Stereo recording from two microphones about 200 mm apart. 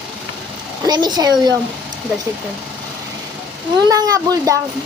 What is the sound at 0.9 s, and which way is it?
Speech, 20° right (ahead or behind).